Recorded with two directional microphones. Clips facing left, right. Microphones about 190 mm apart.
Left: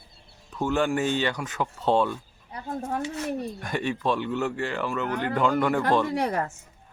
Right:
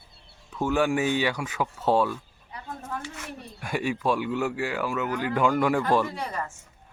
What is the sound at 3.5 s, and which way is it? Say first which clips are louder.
Speech: even; 10° right (ahead or behind).